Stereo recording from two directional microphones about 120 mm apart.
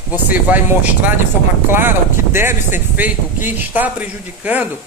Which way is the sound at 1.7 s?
20° right (ahead or behind).